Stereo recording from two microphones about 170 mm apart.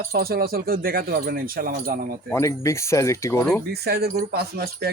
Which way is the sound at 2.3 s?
15° left (ahead or behind).